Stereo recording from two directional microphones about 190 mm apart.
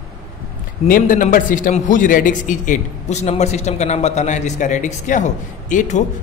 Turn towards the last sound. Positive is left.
turn(degrees=40)  # may be behind; listen again after turning